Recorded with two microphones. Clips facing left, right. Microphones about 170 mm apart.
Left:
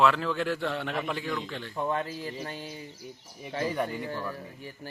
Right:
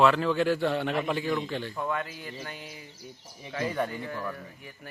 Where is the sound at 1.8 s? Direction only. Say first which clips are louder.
Left 6 dB; 30° left (ahead or behind).